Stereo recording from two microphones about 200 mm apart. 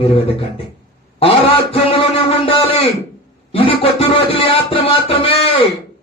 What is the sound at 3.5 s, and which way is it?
Music, 30° left (ahead or behind).